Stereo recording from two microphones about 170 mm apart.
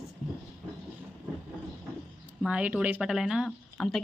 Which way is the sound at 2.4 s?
5° right (ahead or behind).